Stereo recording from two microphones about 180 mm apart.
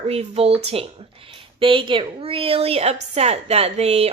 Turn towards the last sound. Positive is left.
turn(degrees=-35)  # may be behind; listen again after turning